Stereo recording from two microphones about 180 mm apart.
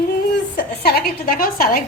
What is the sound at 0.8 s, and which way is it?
A woman's voice, 60° left (ahead or behind).